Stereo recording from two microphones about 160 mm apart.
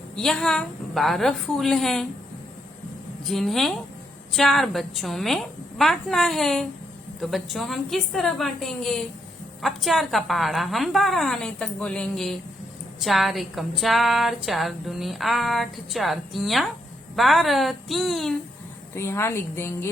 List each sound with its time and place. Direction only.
0.2 s speech: 5° left (ahead or behind)
3.2 s speech: centre (ahead or behind)
18.9 s a woman's voice: 15° left (ahead or behind)